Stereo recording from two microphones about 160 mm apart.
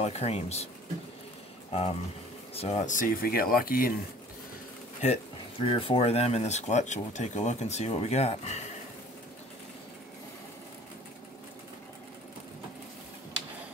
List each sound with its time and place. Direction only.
0.0 s speech: 40° left (ahead or behind)
1.7 s speech: 40° left (ahead or behind); by 3.9 s 65° left (ahead or behind)
5.0 s speech: 40° left (ahead or behind)